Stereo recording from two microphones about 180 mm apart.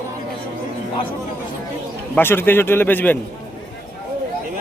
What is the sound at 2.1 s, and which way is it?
A man's voice, 10° left (ahead or behind).